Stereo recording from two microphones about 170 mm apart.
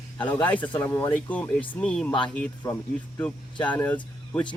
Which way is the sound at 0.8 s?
15° left (ahead or behind).